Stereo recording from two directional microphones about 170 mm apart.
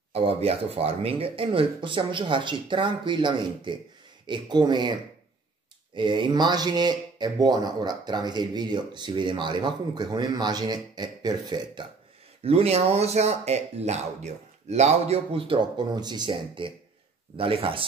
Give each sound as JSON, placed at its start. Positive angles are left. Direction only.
{"t": 0.1, "sound": "speech", "side_deg": -35}
{"t": 5.9, "sound": "speech", "side_deg": -30}